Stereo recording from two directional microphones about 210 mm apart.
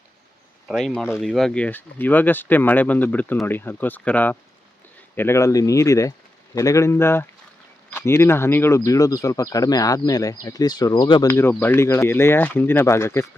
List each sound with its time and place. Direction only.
0.7 s speech: centre (ahead or behind)